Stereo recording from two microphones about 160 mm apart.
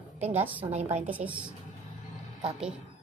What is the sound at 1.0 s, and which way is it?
Speech, 10° right (ahead or behind).